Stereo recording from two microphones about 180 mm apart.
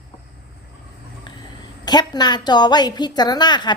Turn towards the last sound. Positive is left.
turn(degrees=25)  # may be behind; listen again after turning